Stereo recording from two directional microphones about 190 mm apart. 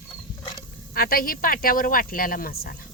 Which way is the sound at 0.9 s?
50° left (ahead or behind).